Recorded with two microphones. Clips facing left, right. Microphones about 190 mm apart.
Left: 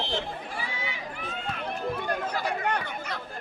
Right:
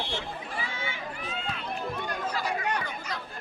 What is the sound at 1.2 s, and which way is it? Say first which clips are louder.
Run: left 2 dB; 55° left (ahead or behind).